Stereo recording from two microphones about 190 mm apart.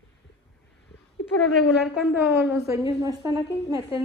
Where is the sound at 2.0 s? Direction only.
5° right (ahead or behind).